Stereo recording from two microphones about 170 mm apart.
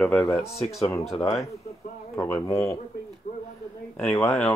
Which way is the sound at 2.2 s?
15° left (ahead or behind).